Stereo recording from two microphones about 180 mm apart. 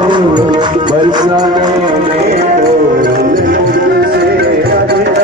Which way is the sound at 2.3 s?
40° right (ahead or behind).